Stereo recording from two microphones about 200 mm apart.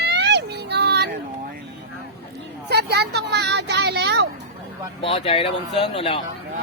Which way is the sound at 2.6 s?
55° right (ahead or behind).